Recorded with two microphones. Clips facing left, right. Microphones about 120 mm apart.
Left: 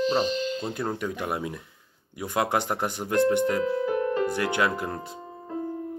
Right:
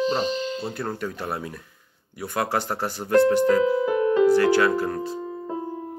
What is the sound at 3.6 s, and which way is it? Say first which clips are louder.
Music: right 4 dB; 90° right.